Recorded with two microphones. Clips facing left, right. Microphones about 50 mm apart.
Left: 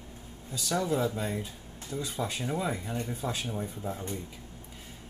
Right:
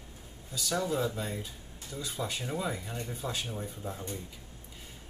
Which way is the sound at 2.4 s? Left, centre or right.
Centre.